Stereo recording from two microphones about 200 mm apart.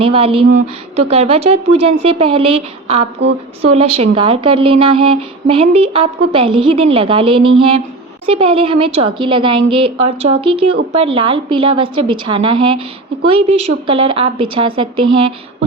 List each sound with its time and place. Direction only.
0.0 s a woman's voice: 25° right (ahead or behind)